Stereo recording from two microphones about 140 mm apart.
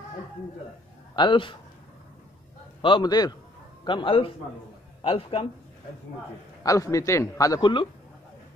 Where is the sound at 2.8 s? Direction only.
35° left (ahead or behind).